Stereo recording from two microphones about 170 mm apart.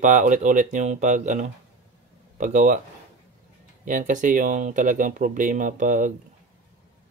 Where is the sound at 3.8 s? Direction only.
50° right (ahead or behind).